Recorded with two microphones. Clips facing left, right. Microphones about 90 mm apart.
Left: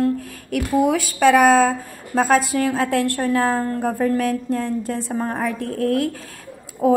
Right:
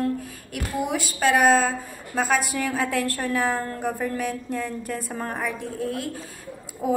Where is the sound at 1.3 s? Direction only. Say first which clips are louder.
Left 5 dB; 55° left (ahead or behind); by 5.5 s 35° left (ahead or behind).